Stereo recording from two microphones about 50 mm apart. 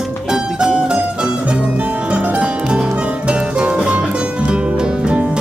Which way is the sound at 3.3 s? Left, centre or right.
Centre.